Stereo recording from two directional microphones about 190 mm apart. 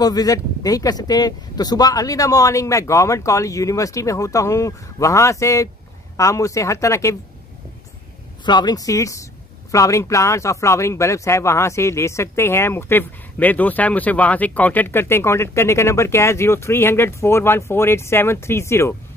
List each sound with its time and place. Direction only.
0.0 s speech: 20° left (ahead or behind)
8.5 s speech: 20° left (ahead or behind)